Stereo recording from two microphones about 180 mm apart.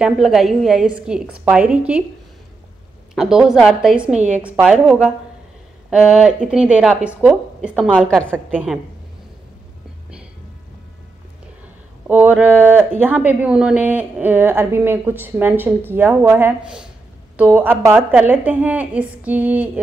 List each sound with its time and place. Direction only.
0.0 s a woman's voice: centre (ahead or behind)
3.2 s a woman's voice: 5° right (ahead or behind)
12.1 s speech: 10° right (ahead or behind)